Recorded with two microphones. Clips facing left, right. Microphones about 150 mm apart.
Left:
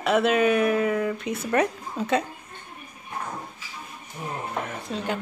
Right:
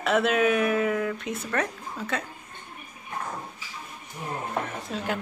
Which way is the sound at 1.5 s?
20° left (ahead or behind).